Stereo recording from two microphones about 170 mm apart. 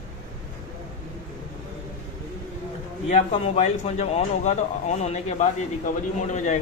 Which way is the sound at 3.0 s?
40° left (ahead or behind).